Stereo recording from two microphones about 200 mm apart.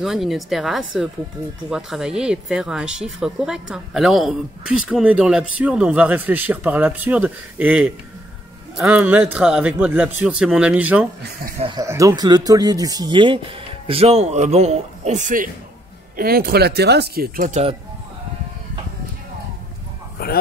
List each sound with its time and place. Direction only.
0.0 s a man's voice: centre (ahead or behind)
11.6 s a man's voice: 20° right (ahead or behind); by 17.7 s 35° right (ahead or behind)